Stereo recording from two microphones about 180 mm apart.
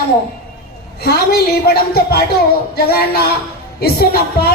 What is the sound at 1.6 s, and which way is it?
Speech, 60° left (ahead or behind).